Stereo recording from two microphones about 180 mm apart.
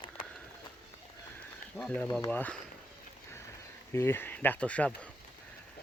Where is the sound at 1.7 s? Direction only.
5° left (ahead or behind).